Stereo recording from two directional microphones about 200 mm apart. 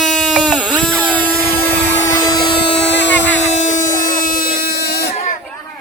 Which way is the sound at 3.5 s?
35° left (ahead or behind).